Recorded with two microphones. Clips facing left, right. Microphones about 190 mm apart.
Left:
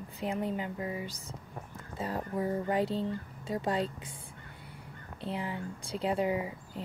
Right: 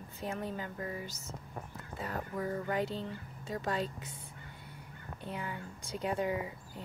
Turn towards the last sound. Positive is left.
turn(degrees=25)  # may be behind; listen again after turning